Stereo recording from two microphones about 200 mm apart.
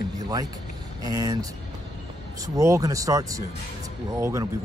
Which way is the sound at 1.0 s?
20° right (ahead or behind).